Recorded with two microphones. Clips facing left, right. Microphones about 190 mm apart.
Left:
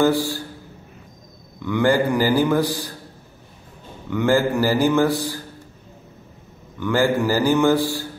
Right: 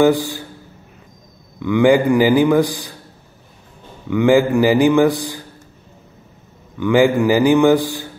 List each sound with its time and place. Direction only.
0.0 s a man's voice: 15° right (ahead or behind)
1.6 s a man's voice: 10° right (ahead or behind)
4.1 s a man's voice: 15° right (ahead or behind)
6.8 s a man's voice: 15° right (ahead or behind)